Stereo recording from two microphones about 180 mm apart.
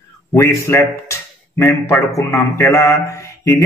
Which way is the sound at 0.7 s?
15° left (ahead or behind).